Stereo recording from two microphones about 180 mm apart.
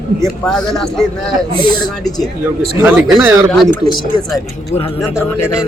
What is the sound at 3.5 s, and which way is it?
Speech, centre (ahead or behind).